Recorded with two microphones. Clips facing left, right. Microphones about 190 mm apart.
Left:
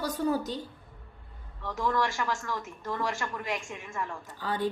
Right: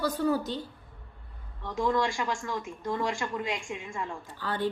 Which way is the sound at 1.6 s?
15° right (ahead or behind).